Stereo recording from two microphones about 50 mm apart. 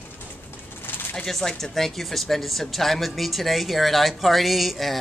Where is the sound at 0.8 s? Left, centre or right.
Left.